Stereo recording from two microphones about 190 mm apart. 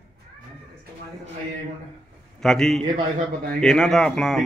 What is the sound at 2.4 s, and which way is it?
A man's voice, centre (ahead or behind).